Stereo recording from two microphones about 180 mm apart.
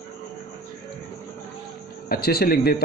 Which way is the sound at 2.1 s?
60° left (ahead or behind).